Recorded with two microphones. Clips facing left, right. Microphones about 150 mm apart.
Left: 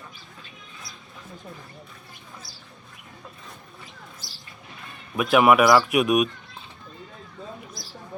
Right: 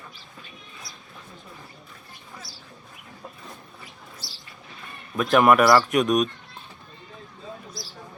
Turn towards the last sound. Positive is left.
turn(degrees=5)  # may be behind; listen again after turning